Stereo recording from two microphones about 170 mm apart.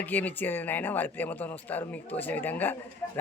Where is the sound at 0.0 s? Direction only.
10° left (ahead or behind).